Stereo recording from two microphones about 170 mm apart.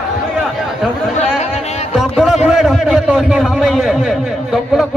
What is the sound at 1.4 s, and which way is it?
Music, 40° left (ahead or behind).